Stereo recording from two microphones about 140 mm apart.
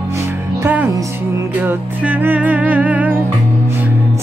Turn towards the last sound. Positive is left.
turn(degrees=-10)  # may be behind; listen again after turning